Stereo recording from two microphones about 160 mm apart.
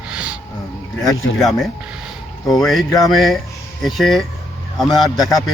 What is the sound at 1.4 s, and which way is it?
A man's voice, centre (ahead or behind).